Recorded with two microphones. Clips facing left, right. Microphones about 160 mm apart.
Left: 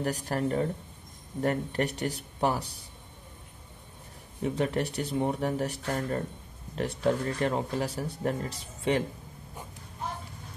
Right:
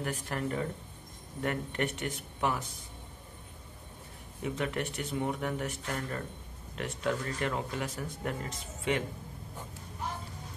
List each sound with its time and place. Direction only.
0.0 s speech: 35° left (ahead or behind)
4.4 s speech: 35° left (ahead or behind)